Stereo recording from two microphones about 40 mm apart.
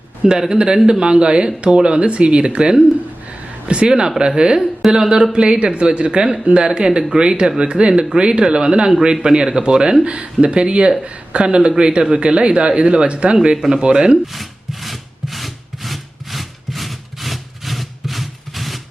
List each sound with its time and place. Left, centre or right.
0.3 s speech: centre
14.3 s wood: centre